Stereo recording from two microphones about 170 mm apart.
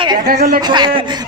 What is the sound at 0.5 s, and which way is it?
Speech, 25° right (ahead or behind).